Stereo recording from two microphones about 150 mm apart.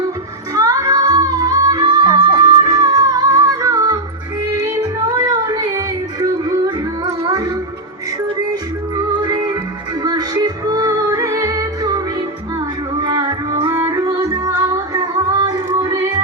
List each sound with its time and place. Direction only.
0.5 s music: 25° right (ahead or behind)
9.0 s music: 25° right (ahead or behind)